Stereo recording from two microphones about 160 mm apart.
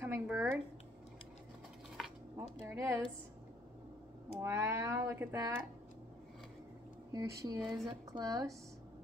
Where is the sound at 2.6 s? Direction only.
15° right (ahead or behind).